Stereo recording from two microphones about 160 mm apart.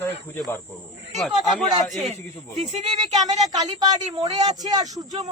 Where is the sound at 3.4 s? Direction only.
25° right (ahead or behind).